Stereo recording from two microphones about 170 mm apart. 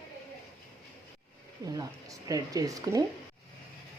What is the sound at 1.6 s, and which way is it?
Speech, 20° right (ahead or behind).